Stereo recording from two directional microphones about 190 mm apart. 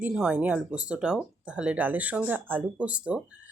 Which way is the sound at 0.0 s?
5° right (ahead or behind).